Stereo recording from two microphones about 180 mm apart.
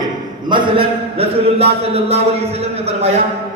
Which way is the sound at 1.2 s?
35° right (ahead or behind).